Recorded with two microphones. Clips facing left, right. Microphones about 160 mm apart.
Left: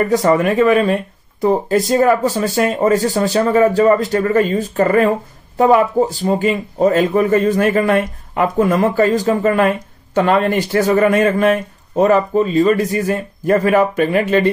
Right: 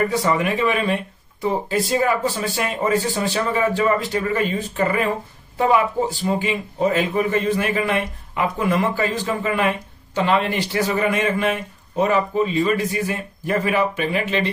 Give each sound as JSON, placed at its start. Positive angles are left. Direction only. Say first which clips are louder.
{"t": 0.1, "sound": "speech", "louder": "left 7 dB", "side_deg": 45}